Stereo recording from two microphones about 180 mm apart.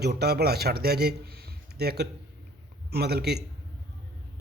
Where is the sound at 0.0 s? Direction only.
65° right (ahead or behind).